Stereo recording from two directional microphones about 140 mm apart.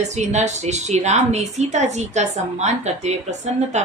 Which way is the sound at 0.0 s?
55° right (ahead or behind).